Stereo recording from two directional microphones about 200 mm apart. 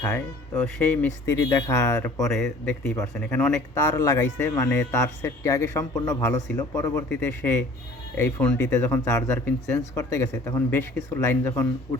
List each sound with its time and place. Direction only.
0.1 s speech: 5° left (ahead or behind)
2.4 s speech: 5° left (ahead or behind)